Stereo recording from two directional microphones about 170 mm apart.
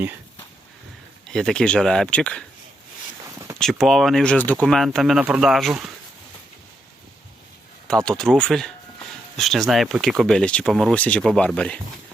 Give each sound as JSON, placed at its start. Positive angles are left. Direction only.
{"t": 1.3, "sound": "speech", "side_deg": 5}
{"t": 3.2, "sound": "a sound", "side_deg": -15}
{"t": 3.6, "sound": "speech", "side_deg": 0}
{"t": 7.9, "sound": "speech", "side_deg": 5}